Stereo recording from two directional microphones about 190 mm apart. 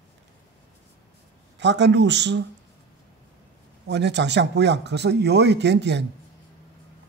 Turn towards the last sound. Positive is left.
turn(degrees=-65)  # may be behind; listen again after turning